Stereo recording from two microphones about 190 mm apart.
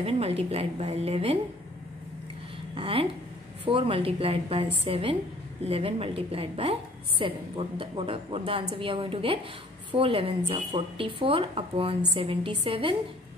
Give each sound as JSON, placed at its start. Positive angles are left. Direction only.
{"t": 0.0, "sound": "a woman's voice", "side_deg": -30}
{"t": 2.7, "sound": "a woman's voice", "side_deg": -30}